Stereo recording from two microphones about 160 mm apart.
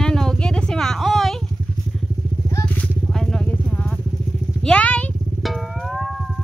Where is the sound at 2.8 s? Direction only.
Centre (ahead or behind).